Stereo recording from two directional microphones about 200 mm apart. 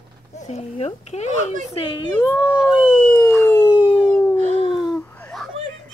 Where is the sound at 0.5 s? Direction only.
30° left (ahead or behind).